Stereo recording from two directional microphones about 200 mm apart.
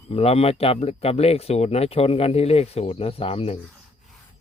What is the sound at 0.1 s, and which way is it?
Speech, 30° left (ahead or behind).